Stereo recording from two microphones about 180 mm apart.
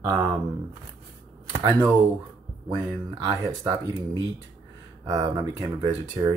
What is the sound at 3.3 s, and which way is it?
Speech, 20° right (ahead or behind).